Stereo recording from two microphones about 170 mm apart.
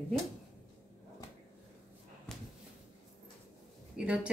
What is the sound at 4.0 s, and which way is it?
Speech, 5° right (ahead or behind).